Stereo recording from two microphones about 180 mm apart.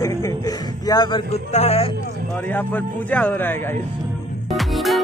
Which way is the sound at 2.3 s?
10° left (ahead or behind).